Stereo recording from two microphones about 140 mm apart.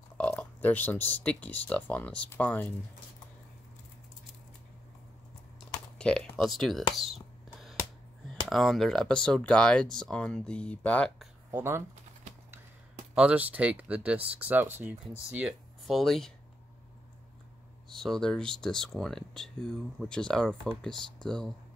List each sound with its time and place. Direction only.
0.2 s speech: 10° left (ahead or behind)
5.9 s speech: 5° left (ahead or behind)
8.5 s speech: centre (ahead or behind)
11.5 s speech: 20° right (ahead or behind)
13.1 s speech: 10° right (ahead or behind)
15.9 s speech: centre (ahead or behind)
17.8 s speech: 5° left (ahead or behind)